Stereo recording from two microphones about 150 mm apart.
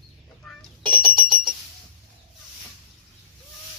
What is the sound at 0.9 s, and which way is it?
Alarm clock, 75° right (ahead or behind).